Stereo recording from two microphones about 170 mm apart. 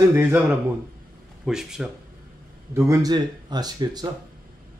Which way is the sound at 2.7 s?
20° right (ahead or behind).